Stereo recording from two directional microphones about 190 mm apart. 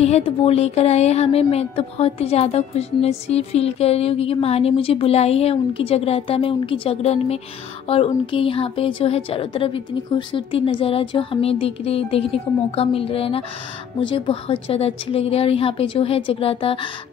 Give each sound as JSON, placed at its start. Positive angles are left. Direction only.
{"t": 0.0, "sound": "a woman's voice", "side_deg": 35}